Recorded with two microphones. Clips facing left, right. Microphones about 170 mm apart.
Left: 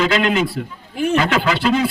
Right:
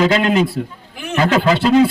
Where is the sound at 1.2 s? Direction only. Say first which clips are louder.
Right 9 dB; 30° right (ahead or behind).